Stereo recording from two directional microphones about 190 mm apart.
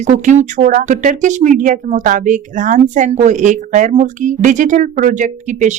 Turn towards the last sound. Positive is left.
turn(degrees=-40)  # may be behind; listen again after turning